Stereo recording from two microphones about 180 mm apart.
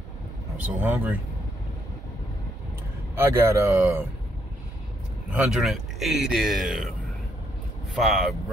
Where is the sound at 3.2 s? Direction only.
15° right (ahead or behind).